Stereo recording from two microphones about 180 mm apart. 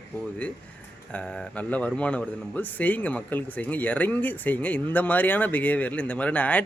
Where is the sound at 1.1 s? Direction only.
5° left (ahead or behind).